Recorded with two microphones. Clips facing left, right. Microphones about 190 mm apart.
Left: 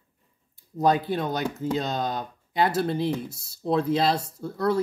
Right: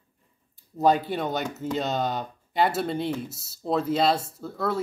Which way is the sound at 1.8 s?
5° right (ahead or behind).